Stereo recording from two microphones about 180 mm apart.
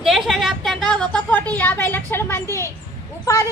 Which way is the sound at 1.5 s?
10° left (ahead or behind).